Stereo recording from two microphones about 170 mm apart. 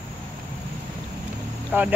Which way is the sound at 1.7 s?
10° right (ahead or behind).